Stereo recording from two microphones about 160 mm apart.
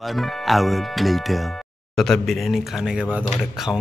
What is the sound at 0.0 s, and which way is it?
Speech, centre (ahead or behind).